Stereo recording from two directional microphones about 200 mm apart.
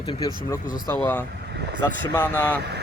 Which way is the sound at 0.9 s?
5° left (ahead or behind).